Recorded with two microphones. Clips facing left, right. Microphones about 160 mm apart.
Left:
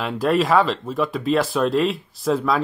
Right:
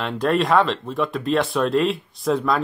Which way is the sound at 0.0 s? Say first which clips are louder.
Left 1 dB; 5° left (ahead or behind).